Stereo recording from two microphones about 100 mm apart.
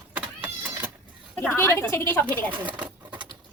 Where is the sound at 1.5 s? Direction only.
25° left (ahead or behind).